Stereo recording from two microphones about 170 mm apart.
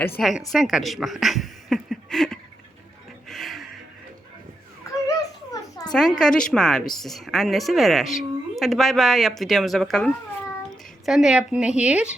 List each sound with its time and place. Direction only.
0.2 s a woman's voice: centre (ahead or behind)
3.2 s music: centre (ahead or behind)
5.0 s a sound: 20° left (ahead or behind)
5.9 s a woman's voice: 5° left (ahead or behind)